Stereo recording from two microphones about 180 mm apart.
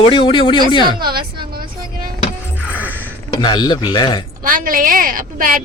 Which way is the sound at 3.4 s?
25° left (ahead or behind).